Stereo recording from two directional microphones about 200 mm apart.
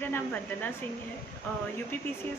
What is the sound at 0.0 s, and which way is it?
Speech, 10° left (ahead or behind).